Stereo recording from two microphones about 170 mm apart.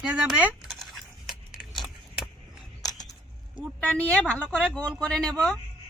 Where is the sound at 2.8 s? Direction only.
20° left (ahead or behind).